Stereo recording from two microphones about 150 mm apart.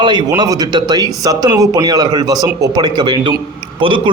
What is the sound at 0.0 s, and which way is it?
A man's voice, 30° right (ahead or behind).